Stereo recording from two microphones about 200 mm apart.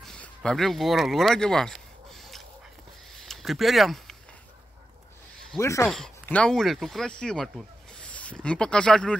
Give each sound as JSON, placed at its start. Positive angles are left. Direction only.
{"t": 0.0, "sound": "a sound", "side_deg": 5}
{"t": 5.6, "sound": "speech", "side_deg": 15}
{"t": 5.9, "sound": "speech", "side_deg": 5}